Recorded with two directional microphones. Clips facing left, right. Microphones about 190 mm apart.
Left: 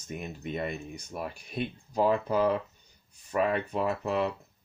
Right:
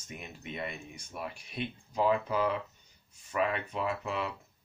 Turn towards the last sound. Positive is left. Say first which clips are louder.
# left 5 dB
turn(degrees=40)  # may be behind; listen again after turning